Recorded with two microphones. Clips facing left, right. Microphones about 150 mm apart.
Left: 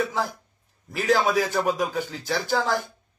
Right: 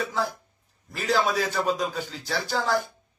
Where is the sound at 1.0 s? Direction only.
15° left (ahead or behind).